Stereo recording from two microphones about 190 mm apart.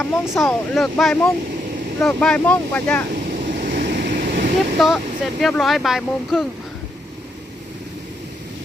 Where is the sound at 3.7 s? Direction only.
60° right (ahead or behind).